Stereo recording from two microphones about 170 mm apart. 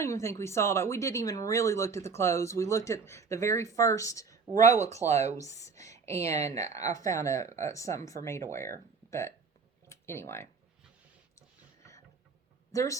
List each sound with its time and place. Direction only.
0.0 s a woman's voice: 15° left (ahead or behind)
4.5 s speech: 45° right (ahead or behind)
5.4 s a woman's voice: 20° left (ahead or behind)
12.7 s a woman's voice: 20° left (ahead or behind)